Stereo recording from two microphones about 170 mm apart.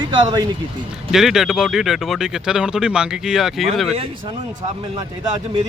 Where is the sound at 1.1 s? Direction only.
Centre (ahead or behind).